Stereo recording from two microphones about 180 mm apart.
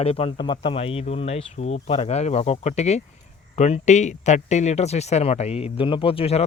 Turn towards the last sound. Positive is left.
turn(degrees=30)  # may be behind; listen again after turning